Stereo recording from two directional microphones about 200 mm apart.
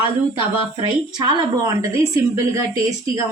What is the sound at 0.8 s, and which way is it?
A woman's voice, 25° right (ahead or behind).